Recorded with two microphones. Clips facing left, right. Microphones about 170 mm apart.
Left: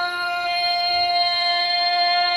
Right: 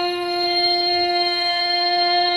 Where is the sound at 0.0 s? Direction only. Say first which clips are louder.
Right 5 dB; 20° right (ahead or behind).